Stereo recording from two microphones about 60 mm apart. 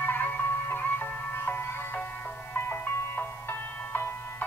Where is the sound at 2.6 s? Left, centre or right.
Left.